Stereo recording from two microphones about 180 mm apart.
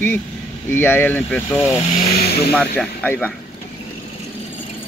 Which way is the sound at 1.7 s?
35° left (ahead or behind).